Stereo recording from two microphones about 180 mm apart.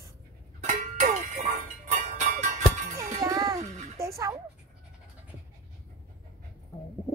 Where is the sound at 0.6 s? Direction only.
40° right (ahead or behind).